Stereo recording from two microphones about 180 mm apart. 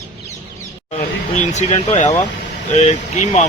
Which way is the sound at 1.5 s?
40° left (ahead or behind).